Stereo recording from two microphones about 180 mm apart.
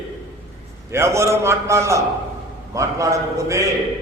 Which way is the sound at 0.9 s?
15° right (ahead or behind).